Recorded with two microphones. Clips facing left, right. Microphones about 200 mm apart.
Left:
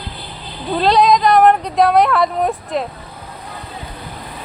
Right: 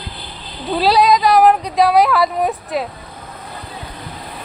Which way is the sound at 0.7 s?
5° right (ahead or behind).